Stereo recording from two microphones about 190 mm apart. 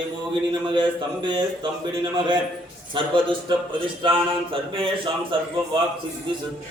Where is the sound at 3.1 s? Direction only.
25° right (ahead or behind).